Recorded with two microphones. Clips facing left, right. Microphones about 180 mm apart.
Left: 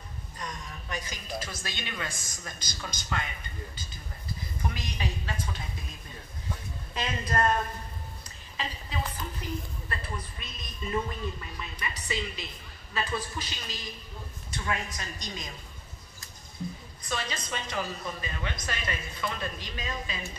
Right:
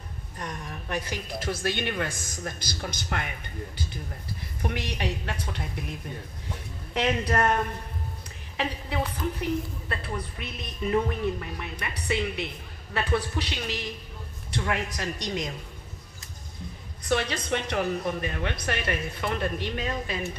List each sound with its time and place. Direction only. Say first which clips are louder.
0.4 s a woman's voice: right 4 dB; 55° right (ahead or behind)
17.0 s a woman's voice: right 8 dB; 65° right (ahead or behind)